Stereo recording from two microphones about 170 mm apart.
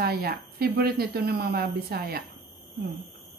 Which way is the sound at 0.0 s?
65° right (ahead or behind).